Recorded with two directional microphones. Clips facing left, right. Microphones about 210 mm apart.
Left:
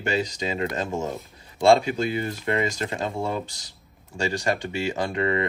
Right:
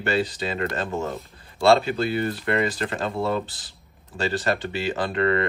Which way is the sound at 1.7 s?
10° left (ahead or behind).